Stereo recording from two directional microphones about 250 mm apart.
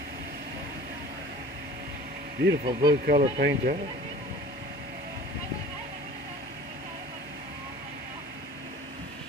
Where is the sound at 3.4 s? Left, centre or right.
Right.